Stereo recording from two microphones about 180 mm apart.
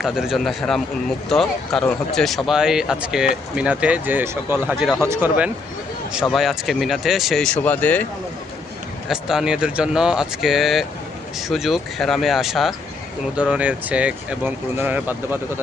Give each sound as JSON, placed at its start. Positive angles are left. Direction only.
{"t": 0.0, "sound": "speech", "side_deg": 0}
{"t": 6.3, "sound": "speech", "side_deg": 0}
{"t": 9.0, "sound": "speech", "side_deg": 0}